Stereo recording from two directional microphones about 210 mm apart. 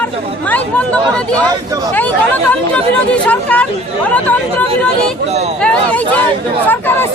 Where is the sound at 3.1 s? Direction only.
5° left (ahead or behind).